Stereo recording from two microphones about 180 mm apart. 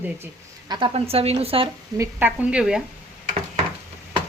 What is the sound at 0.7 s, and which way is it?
A woman's voice, 30° right (ahead or behind).